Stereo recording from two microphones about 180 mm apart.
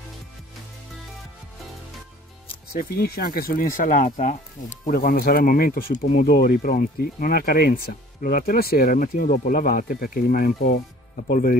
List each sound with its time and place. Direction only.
2.7 s speech: 55° left (ahead or behind)
4.9 s speech: 55° left (ahead or behind)